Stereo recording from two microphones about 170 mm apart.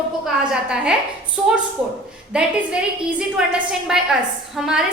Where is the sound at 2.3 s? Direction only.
5° right (ahead or behind).